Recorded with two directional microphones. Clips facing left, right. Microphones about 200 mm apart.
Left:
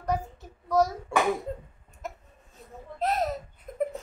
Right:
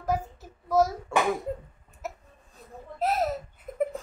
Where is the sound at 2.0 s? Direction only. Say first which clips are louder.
Right 1 dB; 5° right (ahead or behind).